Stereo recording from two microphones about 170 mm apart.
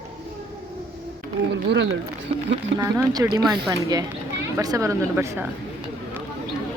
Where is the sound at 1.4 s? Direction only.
55° right (ahead or behind).